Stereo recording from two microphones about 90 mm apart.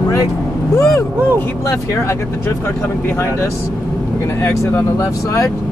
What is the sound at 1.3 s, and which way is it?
Speech, 35° left (ahead or behind).